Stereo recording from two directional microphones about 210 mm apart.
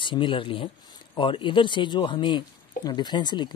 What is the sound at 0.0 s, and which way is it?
Speech, 25° left (ahead or behind).